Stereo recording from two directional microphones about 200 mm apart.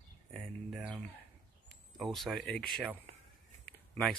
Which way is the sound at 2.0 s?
Centre (ahead or behind).